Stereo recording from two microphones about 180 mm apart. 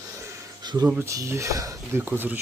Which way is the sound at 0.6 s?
25° right (ahead or behind).